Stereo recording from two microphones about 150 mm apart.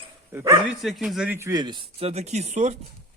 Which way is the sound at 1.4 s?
25° right (ahead or behind).